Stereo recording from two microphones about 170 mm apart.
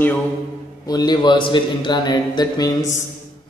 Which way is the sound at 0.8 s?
20° left (ahead or behind).